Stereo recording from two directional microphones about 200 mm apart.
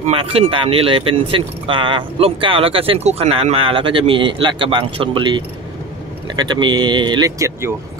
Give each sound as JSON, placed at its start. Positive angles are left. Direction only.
{"t": 0.0, "sound": "speech", "side_deg": -30}